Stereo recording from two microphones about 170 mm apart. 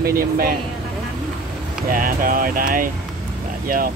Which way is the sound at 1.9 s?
55° right (ahead or behind).